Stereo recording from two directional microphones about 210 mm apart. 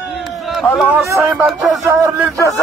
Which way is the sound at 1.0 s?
10° right (ahead or behind).